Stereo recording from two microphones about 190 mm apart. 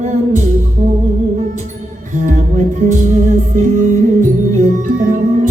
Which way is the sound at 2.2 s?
40° right (ahead or behind).